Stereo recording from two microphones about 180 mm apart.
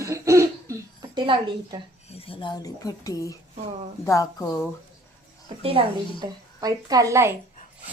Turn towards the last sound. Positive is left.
turn(degrees=-15)  # may be behind; listen again after turning